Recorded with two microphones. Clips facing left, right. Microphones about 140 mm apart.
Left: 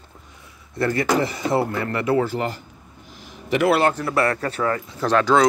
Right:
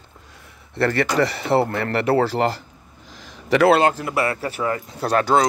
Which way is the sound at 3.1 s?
90° right.